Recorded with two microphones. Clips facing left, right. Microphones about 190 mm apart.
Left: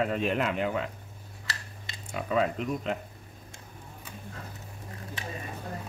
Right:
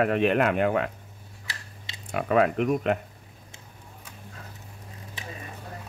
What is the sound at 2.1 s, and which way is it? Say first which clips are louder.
Speech: right 5 dB; 65° right (ahead or behind).